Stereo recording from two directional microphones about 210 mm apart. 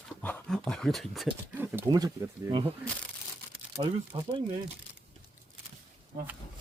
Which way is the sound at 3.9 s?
25° right (ahead or behind).